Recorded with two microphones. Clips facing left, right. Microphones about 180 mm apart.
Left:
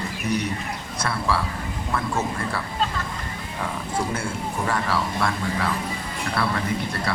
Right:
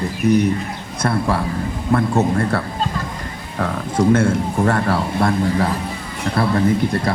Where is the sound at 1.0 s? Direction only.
50° right (ahead or behind).